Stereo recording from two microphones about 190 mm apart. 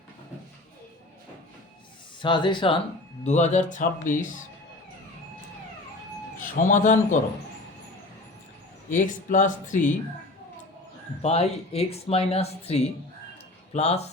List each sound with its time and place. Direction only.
2.2 s speech: 25° left (ahead or behind)
3.2 s speech: 40° left (ahead or behind)
6.4 s a man's voice: 40° left (ahead or behind)
8.9 s speech: 45° left (ahead or behind)
11.2 s speech: 35° left (ahead or behind)